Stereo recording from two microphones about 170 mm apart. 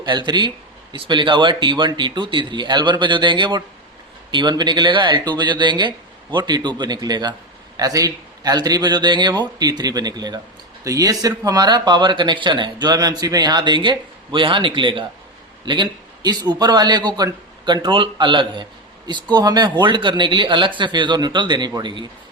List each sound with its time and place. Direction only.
0.0 s a man's voice: 25° right (ahead or behind)